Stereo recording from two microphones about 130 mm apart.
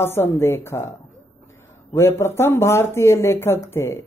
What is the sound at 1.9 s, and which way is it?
Speech, 20° left (ahead or behind).